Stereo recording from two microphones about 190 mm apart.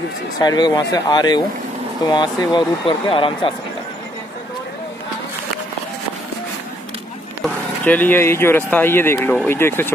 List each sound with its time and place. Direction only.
0.4 s speech: 20° left (ahead or behind)
7.8 s speech: 10° left (ahead or behind)